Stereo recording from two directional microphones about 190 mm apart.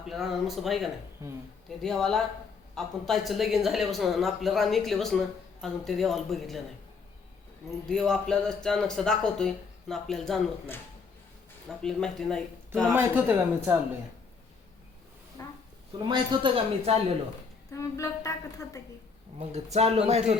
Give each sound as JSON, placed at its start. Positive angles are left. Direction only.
{"t": 0.1, "sound": "speech", "side_deg": 0}
{"t": 1.2, "sound": "speech", "side_deg": -15}
{"t": 1.8, "sound": "speech", "side_deg": 0}
{"t": 7.9, "sound": "speech", "side_deg": 5}
{"t": 11.8, "sound": "speech", "side_deg": 5}
{"t": 12.9, "sound": "speech", "side_deg": -10}
{"t": 15.4, "sound": "speech", "side_deg": 15}
{"t": 15.9, "sound": "speech", "side_deg": -25}
{"t": 17.7, "sound": "a woman's voice", "side_deg": 15}
{"t": 19.4, "sound": "speech", "side_deg": -35}